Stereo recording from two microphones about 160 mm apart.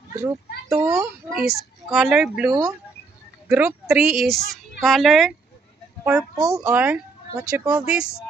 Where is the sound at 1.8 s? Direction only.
5° right (ahead or behind).